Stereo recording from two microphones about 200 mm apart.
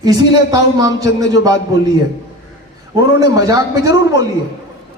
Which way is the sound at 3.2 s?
20° right (ahead or behind).